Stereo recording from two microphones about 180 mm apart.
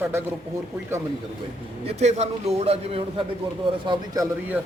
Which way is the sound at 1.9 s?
35° right (ahead or behind).